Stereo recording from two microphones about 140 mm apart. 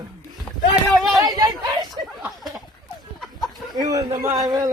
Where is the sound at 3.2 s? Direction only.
Centre (ahead or behind).